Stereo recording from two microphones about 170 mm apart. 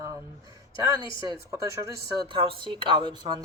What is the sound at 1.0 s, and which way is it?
Speech, 30° left (ahead or behind).